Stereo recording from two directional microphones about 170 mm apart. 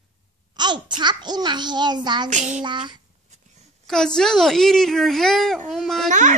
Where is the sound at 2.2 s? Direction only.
45° right (ahead or behind).